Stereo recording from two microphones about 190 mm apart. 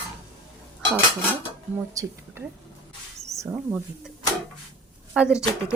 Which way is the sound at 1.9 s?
20° right (ahead or behind).